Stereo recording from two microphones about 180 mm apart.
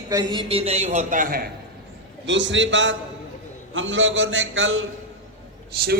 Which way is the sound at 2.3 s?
90° right.